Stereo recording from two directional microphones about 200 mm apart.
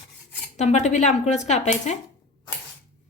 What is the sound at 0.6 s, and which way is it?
A woman's voice, 35° left (ahead or behind).